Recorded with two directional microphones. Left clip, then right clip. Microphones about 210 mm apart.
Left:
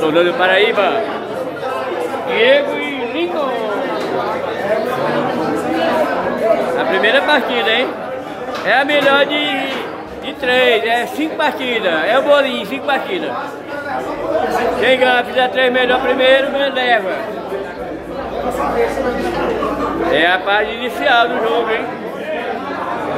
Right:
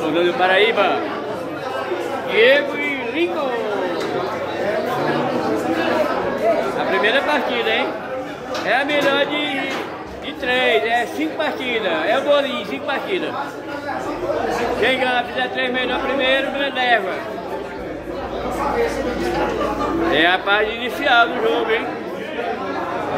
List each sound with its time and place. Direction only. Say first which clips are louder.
0.0 s speech: left 5 dB; 20° left (ahead or behind)
0.4 s speech: left 3 dB; centre (ahead or behind)
2.3 s speech: left 2 dB; centre (ahead or behind)
6.9 s a woman's voice: left 5 dB; 15° left (ahead or behind)
14.8 s speech: left 6 dB; 20° left (ahead or behind)
20.1 s speech: left 3 dB; centre (ahead or behind)